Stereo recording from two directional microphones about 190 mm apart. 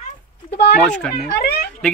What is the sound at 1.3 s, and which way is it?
Speech, 60° left (ahead or behind).